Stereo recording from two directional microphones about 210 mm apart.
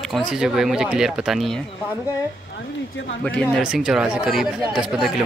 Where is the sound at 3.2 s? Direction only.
5° left (ahead or behind).